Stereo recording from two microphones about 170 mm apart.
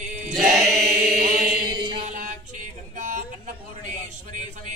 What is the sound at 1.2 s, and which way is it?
Chant, 55° right (ahead or behind).